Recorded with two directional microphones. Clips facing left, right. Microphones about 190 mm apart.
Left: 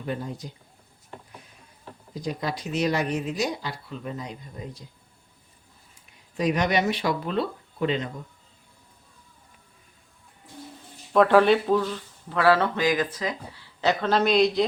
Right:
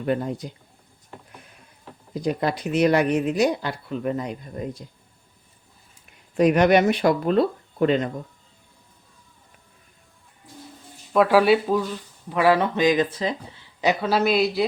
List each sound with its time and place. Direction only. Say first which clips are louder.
0.0 s speech: right 7 dB; 60° right (ahead or behind)
2.1 s speech: right 6 dB; 60° right (ahead or behind)
6.3 s speech: right 7 dB; 60° right (ahead or behind)
11.1 s speech: right 1 dB; 5° right (ahead or behind); by 13.9 s 20° right (ahead or behind)
14.0 s a man's voice: left 1 dB; 5° right (ahead or behind)